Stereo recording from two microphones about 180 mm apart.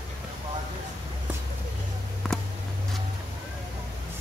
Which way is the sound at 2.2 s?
Centre (ahead or behind).